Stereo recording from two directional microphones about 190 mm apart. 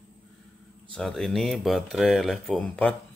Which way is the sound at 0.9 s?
Centre (ahead or behind).